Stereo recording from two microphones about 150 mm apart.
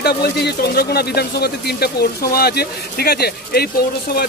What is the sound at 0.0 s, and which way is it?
Speech, 90° left.